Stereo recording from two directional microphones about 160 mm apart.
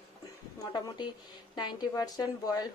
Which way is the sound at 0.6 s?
25° left (ahead or behind).